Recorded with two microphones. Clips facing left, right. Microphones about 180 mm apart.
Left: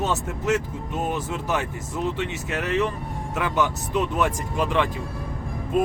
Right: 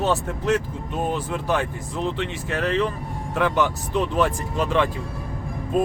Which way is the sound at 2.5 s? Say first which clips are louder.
Right 2 dB; 10° left (ahead or behind).